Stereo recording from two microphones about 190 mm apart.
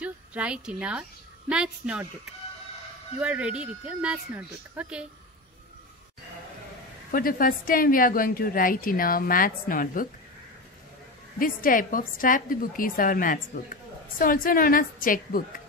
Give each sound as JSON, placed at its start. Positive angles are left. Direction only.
{"t": 0.0, "sound": "a woman's voice", "side_deg": -5}
{"t": 3.2, "sound": "speech", "side_deg": -5}
{"t": 7.1, "sound": "a woman's voice", "side_deg": 50}
{"t": 11.3, "sound": "a woman's voice", "side_deg": 45}